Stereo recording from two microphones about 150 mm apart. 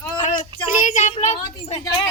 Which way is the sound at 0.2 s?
55° left (ahead or behind).